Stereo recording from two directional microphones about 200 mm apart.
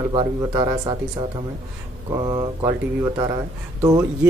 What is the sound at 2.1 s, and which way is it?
Speech, 20° right (ahead or behind).